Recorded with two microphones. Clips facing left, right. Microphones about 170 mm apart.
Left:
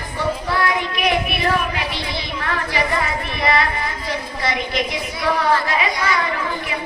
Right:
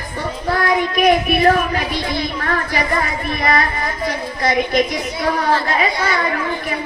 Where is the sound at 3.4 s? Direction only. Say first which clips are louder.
Right 1 dB; 45° right (ahead or behind).